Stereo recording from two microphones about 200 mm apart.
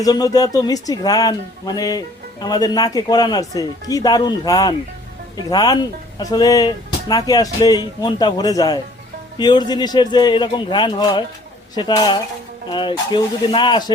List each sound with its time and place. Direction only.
0.0 s speech: 20° left (ahead or behind)